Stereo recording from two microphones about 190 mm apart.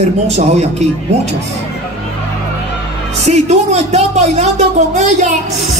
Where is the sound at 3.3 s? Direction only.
35° right (ahead or behind).